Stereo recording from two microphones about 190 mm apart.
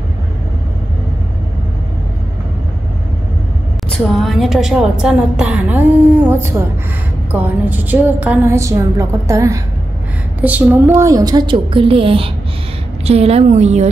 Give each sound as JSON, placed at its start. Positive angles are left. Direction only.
{"t": 3.9, "sound": "a woman's voice", "side_deg": 0}